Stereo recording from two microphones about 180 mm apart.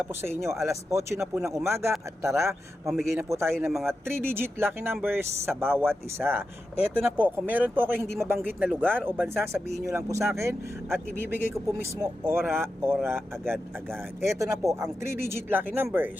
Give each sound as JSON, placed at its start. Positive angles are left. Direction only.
{"t": 0.0, "sound": "speech", "side_deg": -15}
{"t": 3.7, "sound": "speech", "side_deg": 0}
{"t": 4.0, "sound": "speech", "side_deg": -10}
{"t": 14.3, "sound": "speech", "side_deg": -15}